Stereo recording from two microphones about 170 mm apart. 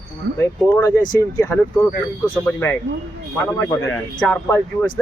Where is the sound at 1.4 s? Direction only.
10° left (ahead or behind).